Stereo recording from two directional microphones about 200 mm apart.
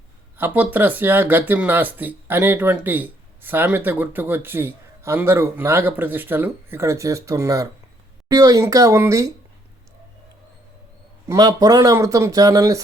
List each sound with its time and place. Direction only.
0.3 s speech: 10° right (ahead or behind)
11.3 s speech: 20° right (ahead or behind)